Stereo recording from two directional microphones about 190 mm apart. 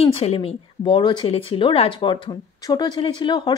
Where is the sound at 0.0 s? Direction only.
30° left (ahead or behind).